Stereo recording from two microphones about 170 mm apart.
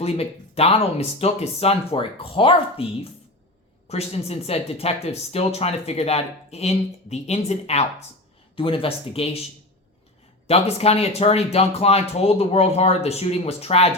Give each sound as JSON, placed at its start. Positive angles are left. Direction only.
{"t": 0.0, "sound": "speech", "side_deg": 35}
{"t": 10.4, "sound": "speech", "side_deg": 35}